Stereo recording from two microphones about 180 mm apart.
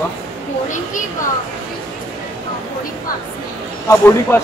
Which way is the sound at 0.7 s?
45° left (ahead or behind).